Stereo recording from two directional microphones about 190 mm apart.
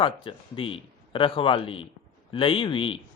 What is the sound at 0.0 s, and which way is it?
Speech, 25° left (ahead or behind).